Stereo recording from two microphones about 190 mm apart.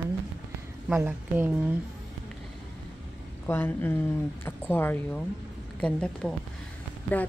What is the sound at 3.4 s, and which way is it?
A woman's voice, 10° left (ahead or behind).